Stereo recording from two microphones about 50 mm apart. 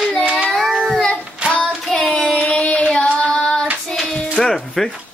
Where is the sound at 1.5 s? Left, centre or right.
Centre.